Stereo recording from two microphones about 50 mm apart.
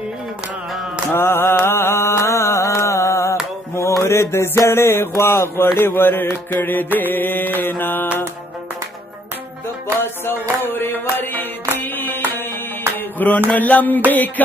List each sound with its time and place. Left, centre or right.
1.1 s mantra: left
5.8 s music: left
6.2 s mantra: left
6.6 s music: left
10.6 s music: left